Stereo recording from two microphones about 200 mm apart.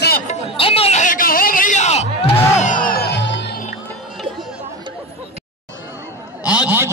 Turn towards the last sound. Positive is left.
turn(degrees=-5)  # may be behind; listen again after turning